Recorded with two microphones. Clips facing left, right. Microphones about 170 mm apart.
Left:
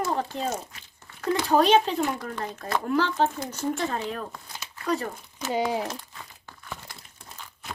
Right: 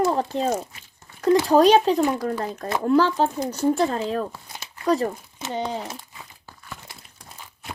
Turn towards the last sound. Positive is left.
turn(degrees=0)  # may be behind; listen again after turning